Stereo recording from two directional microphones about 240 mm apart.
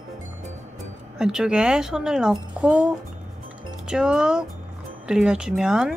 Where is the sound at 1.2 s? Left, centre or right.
Centre.